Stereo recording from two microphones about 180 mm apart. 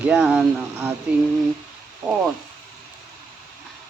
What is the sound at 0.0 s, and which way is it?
Speech, 5° right (ahead or behind).